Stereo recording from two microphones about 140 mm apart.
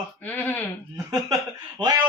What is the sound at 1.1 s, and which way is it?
Speech, 30° right (ahead or behind).